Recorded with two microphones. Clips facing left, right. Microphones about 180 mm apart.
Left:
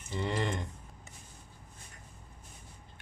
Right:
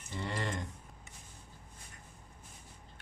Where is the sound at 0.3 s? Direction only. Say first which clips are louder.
Left 5 dB; 20° left (ahead or behind).